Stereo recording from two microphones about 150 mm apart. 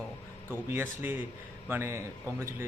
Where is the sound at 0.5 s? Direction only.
15° right (ahead or behind).